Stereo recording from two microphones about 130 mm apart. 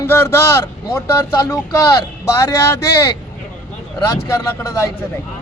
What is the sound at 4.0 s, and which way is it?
Speech, 25° left (ahead or behind).